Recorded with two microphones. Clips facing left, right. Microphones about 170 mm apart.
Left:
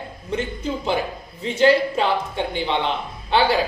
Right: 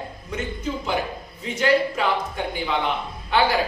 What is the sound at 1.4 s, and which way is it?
A woman's voice, 30° left (ahead or behind).